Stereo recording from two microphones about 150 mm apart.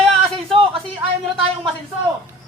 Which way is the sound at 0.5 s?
35° right (ahead or behind).